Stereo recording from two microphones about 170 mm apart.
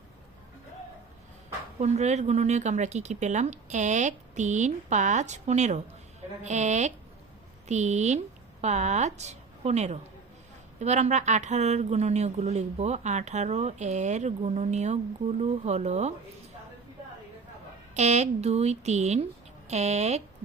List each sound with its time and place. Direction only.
1.8 s speech: 40° right (ahead or behind)
17.9 s speech: 40° right (ahead or behind)